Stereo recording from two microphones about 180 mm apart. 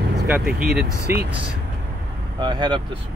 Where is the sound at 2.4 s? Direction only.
25° right (ahead or behind).